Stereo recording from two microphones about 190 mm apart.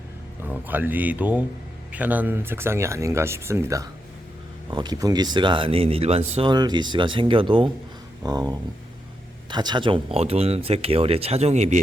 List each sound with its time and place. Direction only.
0.4 s speech: 10° right (ahead or behind); by 11.8 s 40° right (ahead or behind)